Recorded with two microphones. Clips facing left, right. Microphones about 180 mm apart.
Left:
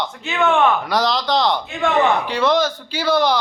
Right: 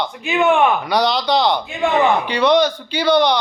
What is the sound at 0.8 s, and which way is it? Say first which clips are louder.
Speech: right 2 dB; centre (ahead or behind).